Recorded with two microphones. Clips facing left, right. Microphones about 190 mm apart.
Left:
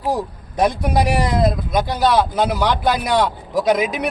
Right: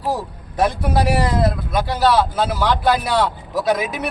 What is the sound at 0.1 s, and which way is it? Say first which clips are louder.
Speech: left 2 dB; 15° left (ahead or behind).